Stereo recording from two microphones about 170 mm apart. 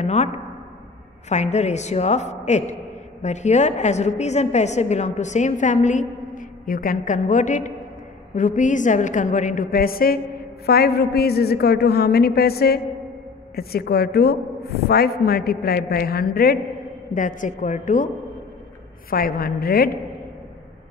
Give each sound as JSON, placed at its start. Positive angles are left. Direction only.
{"t": 0.0, "sound": "speech", "side_deg": 40}
{"t": 1.3, "sound": "a woman's voice", "side_deg": 40}
{"t": 17.1, "sound": "a woman's voice", "side_deg": 50}
{"t": 19.0, "sound": "a woman's voice", "side_deg": 60}